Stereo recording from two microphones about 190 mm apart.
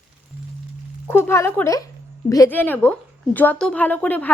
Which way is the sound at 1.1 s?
10° left (ahead or behind).